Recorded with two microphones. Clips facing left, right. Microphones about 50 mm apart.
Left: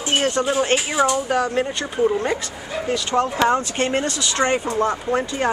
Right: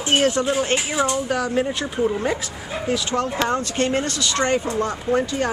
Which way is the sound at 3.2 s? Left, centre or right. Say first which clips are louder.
Left 3 dB; centre.